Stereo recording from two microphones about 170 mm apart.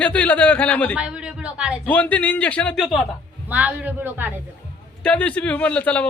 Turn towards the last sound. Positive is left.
turn(degrees=5)  # may be behind; listen again after turning